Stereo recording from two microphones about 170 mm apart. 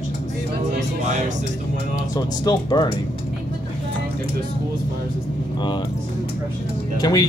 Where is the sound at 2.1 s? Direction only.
25° left (ahead or behind).